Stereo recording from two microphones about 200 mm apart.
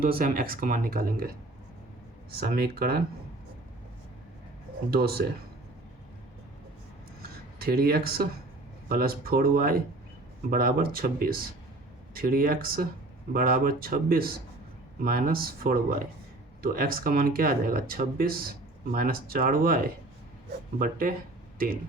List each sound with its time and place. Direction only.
0.0 s speech: 45° right (ahead or behind)
2.4 s speech: 50° right (ahead or behind)
4.9 s speech: 50° right (ahead or behind)
7.2 s a sound: 50° right (ahead or behind)
8.9 s speech: 50° right (ahead or behind)